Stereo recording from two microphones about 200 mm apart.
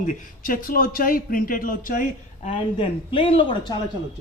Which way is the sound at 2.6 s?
25° left (ahead or behind).